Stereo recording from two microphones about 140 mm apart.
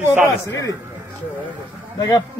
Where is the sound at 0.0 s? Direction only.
15° right (ahead or behind).